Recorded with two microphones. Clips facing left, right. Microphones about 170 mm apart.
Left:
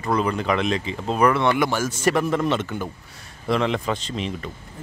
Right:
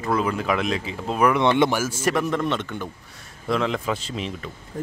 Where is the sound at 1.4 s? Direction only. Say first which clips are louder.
Right 2 dB; 20° right (ahead or behind).